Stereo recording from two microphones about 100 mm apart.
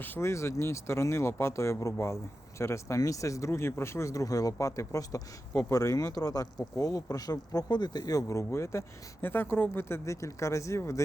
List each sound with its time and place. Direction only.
0.0 s speech: 20° left (ahead or behind)